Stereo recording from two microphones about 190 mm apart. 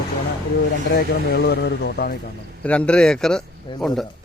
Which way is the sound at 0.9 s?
55° left (ahead or behind).